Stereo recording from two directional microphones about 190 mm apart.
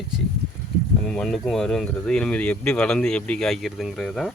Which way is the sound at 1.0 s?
5° left (ahead or behind).